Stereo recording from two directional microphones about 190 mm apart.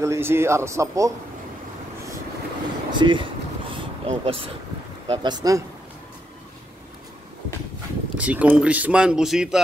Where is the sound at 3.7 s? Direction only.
30° right (ahead or behind).